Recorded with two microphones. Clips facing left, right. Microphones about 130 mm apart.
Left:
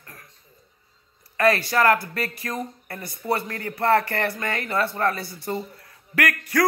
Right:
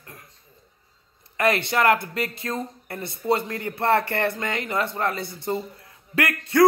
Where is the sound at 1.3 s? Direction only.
20° right (ahead or behind).